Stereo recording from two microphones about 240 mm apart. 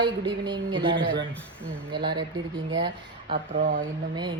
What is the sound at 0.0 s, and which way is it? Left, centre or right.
Speech, centre.